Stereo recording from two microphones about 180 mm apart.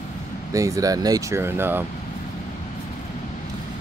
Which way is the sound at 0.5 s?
20° right (ahead or behind).